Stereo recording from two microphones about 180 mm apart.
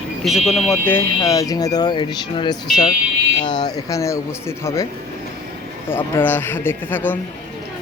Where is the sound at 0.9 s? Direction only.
20° left (ahead or behind).